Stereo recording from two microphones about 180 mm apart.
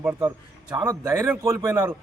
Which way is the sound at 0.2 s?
20° right (ahead or behind).